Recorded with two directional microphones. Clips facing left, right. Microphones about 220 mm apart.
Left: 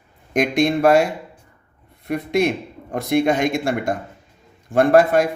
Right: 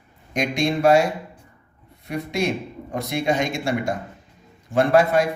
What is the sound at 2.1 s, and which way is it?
Speech, 55° left (ahead or behind).